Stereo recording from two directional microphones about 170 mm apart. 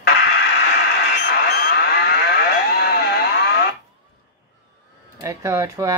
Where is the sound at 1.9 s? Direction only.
70° left (ahead or behind).